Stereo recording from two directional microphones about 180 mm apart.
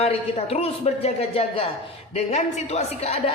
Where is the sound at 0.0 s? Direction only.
35° left (ahead or behind).